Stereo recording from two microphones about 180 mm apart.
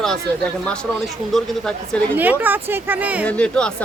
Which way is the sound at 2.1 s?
10° right (ahead or behind).